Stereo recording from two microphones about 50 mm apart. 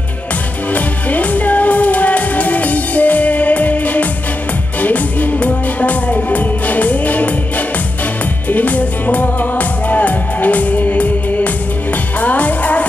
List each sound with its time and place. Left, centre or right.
0.7 s music: left